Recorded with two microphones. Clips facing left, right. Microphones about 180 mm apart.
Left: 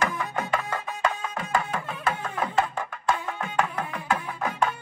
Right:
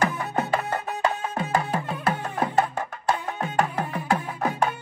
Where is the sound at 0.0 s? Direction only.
35° right (ahead or behind).